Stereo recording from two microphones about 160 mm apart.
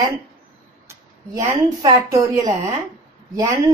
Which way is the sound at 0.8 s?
20° right (ahead or behind).